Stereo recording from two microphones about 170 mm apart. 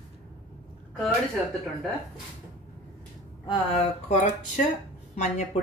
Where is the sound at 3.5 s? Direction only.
35° left (ahead or behind).